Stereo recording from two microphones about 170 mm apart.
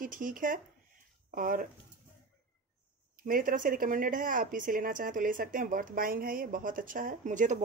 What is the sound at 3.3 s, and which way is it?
Speech, 55° right (ahead or behind).